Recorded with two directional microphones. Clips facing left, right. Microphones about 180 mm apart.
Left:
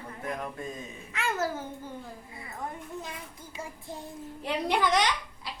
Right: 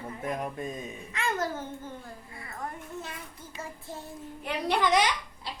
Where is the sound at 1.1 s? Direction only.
5° left (ahead or behind).